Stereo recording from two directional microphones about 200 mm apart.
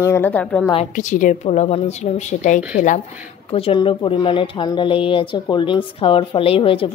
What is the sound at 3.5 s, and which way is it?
Speech, 25° left (ahead or behind).